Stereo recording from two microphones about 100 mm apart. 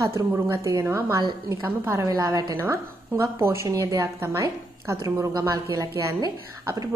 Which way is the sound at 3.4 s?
25° right (ahead or behind).